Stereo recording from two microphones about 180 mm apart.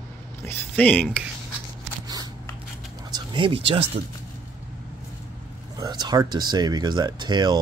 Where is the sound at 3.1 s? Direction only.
30° right (ahead or behind).